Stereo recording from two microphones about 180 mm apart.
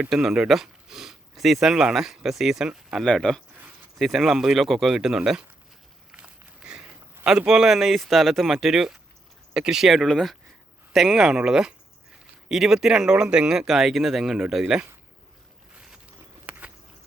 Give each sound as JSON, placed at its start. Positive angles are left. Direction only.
{"t": 0.0, "sound": "speech", "side_deg": 0}
{"t": 6.1, "sound": "a sound", "side_deg": -5}
{"t": 9.6, "sound": "speech", "side_deg": -5}
{"t": 15.7, "sound": "boat", "side_deg": -5}
{"t": 16.5, "sound": "walk", "side_deg": -5}